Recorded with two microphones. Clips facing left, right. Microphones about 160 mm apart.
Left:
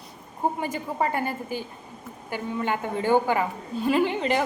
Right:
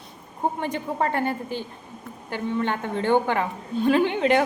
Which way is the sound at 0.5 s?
5° left (ahead or behind).